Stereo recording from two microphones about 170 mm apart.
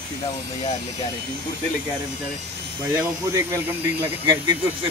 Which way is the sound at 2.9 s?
15° right (ahead or behind).